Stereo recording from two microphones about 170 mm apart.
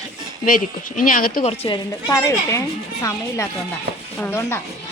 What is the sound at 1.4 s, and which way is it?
A woman's voice, 30° left (ahead or behind).